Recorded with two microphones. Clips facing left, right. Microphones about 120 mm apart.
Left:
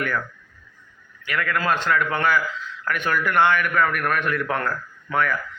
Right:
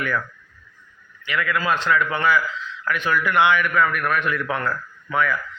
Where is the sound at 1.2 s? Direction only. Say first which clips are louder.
Right 1 dB; 45° left (ahead or behind).